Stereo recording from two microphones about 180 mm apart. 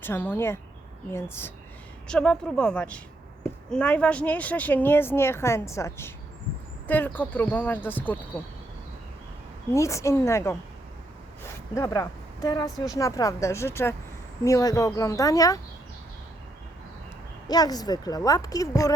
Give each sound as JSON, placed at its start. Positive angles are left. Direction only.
{"t": 0.0, "sound": "a woman's voice", "side_deg": 10}
{"t": 9.7, "sound": "speech", "side_deg": 15}
{"t": 11.7, "sound": "a woman's voice", "side_deg": 20}
{"t": 17.5, "sound": "a woman's voice", "side_deg": 20}